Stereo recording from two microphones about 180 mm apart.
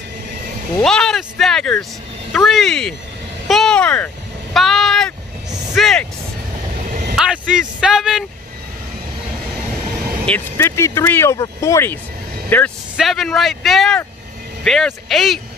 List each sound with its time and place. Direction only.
0.8 s speech: 5° left (ahead or behind)
3.4 s vehicle: centre (ahead or behind)
4.6 s speech: centre (ahead or behind)
6.9 s vehicle: 55° right (ahead or behind)
7.2 s speech: 5° right (ahead or behind)
10.2 s speech: 10° left (ahead or behind)
12.4 s vehicle: 10° left (ahead or behind)
12.9 s a man's voice: centre (ahead or behind)